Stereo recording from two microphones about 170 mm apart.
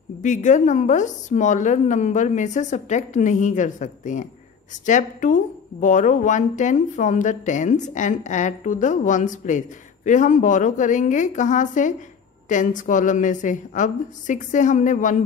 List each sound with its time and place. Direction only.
0.2 s a woman's voice: 45° left (ahead or behind)